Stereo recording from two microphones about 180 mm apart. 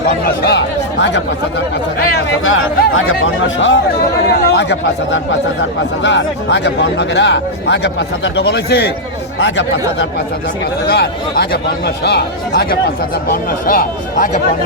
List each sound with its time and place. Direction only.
0.4 s speech: 75° left (ahead or behind)
2.1 s speech: 90° left
4.4 s speech: 70° left (ahead or behind)
6.0 s speech: 90° left; by 8.9 s 65° left (ahead or behind)
9.4 s speech: 90° left
10.8 s speech: 65° left (ahead or behind)
13.3 s speech: 50° left (ahead or behind)